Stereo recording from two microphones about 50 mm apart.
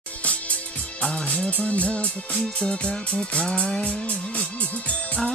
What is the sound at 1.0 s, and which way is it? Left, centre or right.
Music, centre.